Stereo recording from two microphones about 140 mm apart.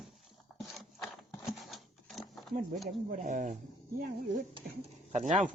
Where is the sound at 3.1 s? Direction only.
70° right (ahead or behind).